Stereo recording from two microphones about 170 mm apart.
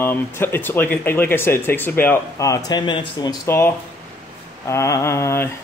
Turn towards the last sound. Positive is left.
turn(degrees=15)  # may be behind; listen again after turning